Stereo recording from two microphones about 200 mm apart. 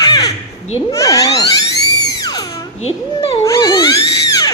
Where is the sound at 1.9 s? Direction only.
20° left (ahead or behind).